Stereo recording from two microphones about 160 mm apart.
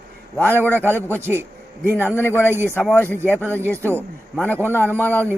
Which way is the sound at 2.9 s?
10° left (ahead or behind).